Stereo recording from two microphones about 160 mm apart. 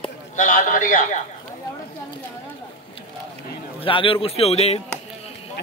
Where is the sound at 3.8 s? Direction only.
35° left (ahead or behind).